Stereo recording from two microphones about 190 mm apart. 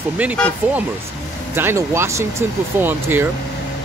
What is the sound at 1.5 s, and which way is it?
Speech, 15° right (ahead or behind).